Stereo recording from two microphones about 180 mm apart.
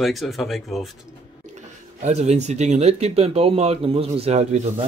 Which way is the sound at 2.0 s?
40° right (ahead or behind).